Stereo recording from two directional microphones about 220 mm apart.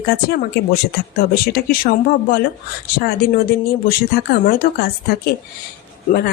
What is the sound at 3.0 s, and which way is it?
Speech, 45° left (ahead or behind).